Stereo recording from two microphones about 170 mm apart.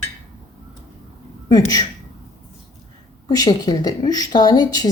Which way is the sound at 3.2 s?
25° left (ahead or behind).